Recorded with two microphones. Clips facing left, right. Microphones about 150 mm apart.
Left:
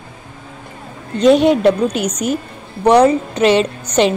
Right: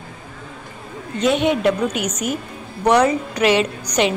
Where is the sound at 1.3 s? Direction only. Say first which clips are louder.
Left 6 dB; 35° left (ahead or behind).